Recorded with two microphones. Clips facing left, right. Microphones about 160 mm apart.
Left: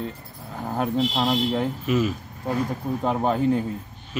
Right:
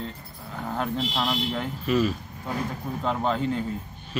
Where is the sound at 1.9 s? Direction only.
15° left (ahead or behind).